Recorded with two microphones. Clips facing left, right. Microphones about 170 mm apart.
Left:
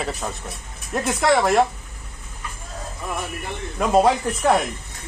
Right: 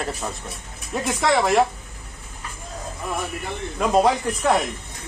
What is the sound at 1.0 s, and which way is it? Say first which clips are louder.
Speech: left 1 dB; centre (ahead or behind).